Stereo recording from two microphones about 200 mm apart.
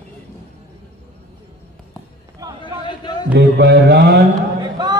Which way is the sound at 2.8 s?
20° left (ahead or behind).